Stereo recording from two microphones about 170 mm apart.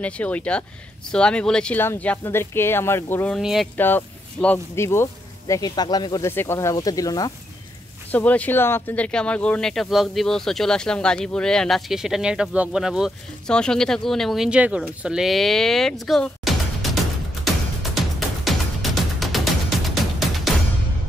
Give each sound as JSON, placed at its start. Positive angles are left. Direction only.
{"t": 0.0, "sound": "speech", "side_deg": 10}
{"t": 3.3, "sound": "speech", "side_deg": 0}
{"t": 3.7, "sound": "speech", "side_deg": 10}
{"t": 8.1, "sound": "speech", "side_deg": 10}
{"t": 17.8, "sound": "music", "side_deg": 0}